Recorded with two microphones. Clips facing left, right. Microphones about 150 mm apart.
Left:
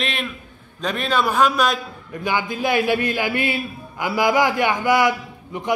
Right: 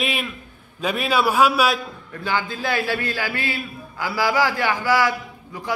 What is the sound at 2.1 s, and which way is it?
A man's voice, 15° left (ahead or behind).